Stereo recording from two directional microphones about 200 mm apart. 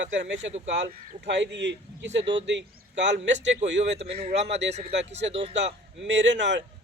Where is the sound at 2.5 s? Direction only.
65° right (ahead or behind).